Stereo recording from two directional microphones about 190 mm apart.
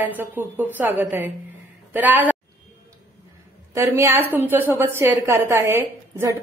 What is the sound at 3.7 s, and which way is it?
A woman's voice, 15° right (ahead or behind).